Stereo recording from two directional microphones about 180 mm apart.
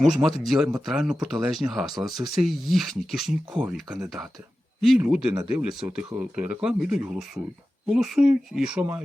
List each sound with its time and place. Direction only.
0.0 s speech: centre (ahead or behind)
6.3 s speech: 40° right (ahead or behind)
6.6 s speech: 5° right (ahead or behind)